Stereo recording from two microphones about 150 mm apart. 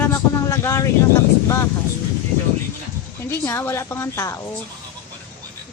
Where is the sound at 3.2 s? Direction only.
15° left (ahead or behind).